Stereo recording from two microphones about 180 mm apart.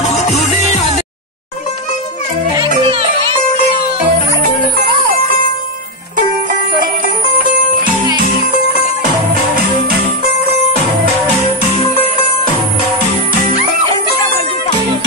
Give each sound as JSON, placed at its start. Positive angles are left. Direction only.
{"t": 0.0, "sound": "music", "side_deg": 40}
{"t": 2.8, "sound": "music", "side_deg": -30}